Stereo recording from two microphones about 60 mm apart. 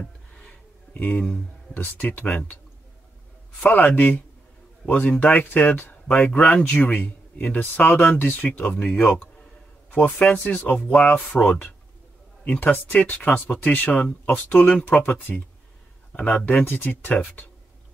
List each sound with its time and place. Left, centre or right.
0.0 s a sound: centre
0.9 s speech: left
3.6 s a man's voice: left